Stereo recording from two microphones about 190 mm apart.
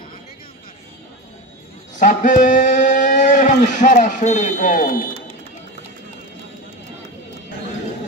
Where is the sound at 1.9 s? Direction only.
45° left (ahead or behind).